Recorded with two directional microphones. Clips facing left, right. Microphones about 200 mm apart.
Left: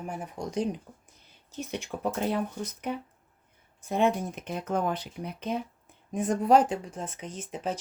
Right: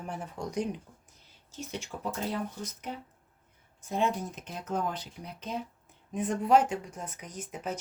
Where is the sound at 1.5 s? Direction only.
60° left (ahead or behind).